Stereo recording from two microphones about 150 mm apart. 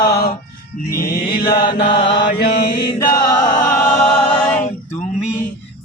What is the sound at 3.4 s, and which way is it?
Music, 60° left (ahead or behind).